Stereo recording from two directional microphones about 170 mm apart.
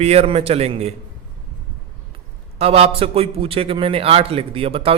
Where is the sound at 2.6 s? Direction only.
35° right (ahead or behind).